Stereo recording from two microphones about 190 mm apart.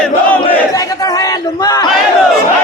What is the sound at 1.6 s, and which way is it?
Battle cry, 20° left (ahead or behind).